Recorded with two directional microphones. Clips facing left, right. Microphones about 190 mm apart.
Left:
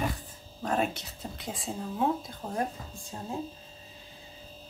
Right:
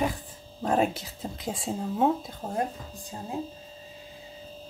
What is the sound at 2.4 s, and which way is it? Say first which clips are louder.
Speech: right 3 dB; 25° right (ahead or behind).